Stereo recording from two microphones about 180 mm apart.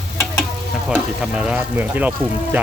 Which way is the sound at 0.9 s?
5° right (ahead or behind).